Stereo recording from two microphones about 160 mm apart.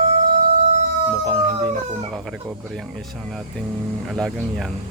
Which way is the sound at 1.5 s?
35° right (ahead or behind).